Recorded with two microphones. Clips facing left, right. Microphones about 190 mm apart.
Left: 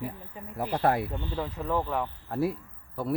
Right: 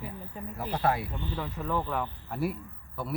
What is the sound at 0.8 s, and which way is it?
Speech, 50° left (ahead or behind).